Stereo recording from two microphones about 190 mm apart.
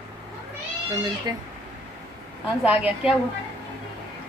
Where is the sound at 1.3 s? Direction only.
20° right (ahead or behind).